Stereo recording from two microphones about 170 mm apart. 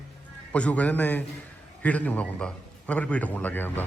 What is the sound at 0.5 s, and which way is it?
A man's voice, 5° left (ahead or behind).